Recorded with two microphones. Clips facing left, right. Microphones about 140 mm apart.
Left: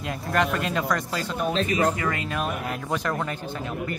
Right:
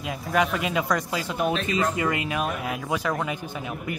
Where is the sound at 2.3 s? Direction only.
5° right (ahead or behind).